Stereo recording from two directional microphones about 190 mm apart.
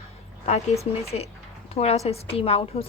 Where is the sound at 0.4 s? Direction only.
35° left (ahead or behind).